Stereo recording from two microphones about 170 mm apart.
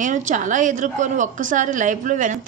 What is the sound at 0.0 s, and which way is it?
A woman's voice, 50° right (ahead or behind).